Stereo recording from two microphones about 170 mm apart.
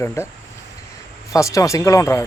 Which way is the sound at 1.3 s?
20° left (ahead or behind).